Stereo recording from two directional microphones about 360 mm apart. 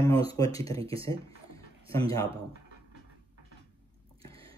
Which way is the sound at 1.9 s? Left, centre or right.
Centre.